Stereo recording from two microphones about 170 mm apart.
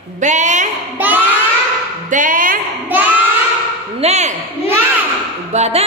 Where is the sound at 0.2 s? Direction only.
45° right (ahead or behind).